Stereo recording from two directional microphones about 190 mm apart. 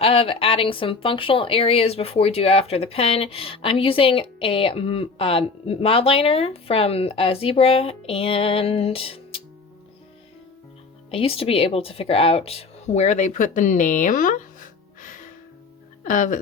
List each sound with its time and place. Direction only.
0.0 s speech: 30° left (ahead or behind)
11.1 s speech: 30° left (ahead or behind)
16.0 s speech: 45° left (ahead or behind)